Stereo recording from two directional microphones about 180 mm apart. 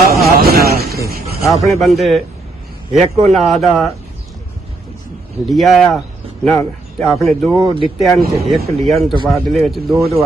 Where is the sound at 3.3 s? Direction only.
Centre (ahead or behind).